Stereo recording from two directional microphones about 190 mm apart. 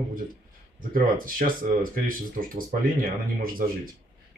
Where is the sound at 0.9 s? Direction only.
45° right (ahead or behind).